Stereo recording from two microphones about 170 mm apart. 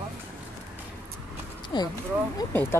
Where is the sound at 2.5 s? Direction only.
10° left (ahead or behind).